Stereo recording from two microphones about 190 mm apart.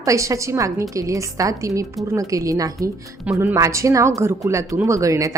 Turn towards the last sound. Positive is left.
turn(degrees=-15)  # may be behind; listen again after turning